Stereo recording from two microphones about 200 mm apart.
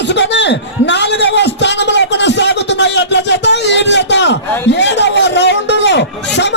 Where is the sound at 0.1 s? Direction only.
60° left (ahead or behind).